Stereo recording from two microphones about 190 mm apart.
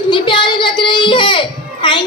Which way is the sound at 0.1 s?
25° left (ahead or behind).